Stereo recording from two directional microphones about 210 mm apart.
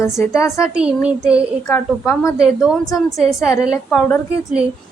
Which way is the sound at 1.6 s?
15° left (ahead or behind).